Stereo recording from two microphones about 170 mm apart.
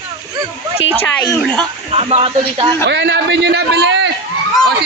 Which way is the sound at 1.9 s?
35° right (ahead or behind).